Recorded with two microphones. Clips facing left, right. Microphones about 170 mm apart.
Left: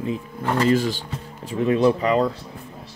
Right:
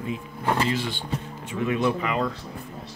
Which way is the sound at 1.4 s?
35° left (ahead or behind).